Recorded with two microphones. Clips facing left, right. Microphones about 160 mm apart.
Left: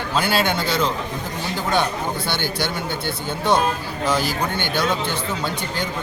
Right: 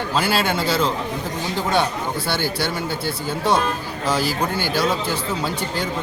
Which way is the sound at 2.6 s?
5° right (ahead or behind).